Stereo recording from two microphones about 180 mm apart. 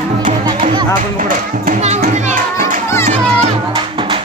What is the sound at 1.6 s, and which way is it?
Children playing, 40° right (ahead or behind).